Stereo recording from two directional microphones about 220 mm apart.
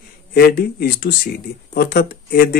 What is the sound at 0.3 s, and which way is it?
Speech, 45° left (ahead or behind).